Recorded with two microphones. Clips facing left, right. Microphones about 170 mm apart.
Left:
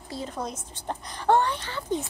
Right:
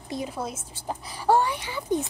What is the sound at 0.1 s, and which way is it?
A woman's voice, 10° right (ahead or behind).